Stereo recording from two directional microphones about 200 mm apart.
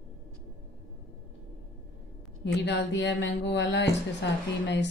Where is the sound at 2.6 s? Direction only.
60° left (ahead or behind).